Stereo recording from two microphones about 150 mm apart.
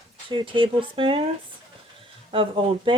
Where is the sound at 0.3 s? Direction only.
35° right (ahead or behind).